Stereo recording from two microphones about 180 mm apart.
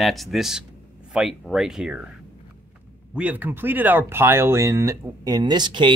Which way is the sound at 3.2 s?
10° right (ahead or behind).